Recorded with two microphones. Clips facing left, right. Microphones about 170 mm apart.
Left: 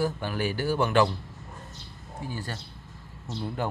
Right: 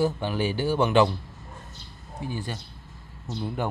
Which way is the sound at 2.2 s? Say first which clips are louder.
Right 3 dB; 20° right (ahead or behind).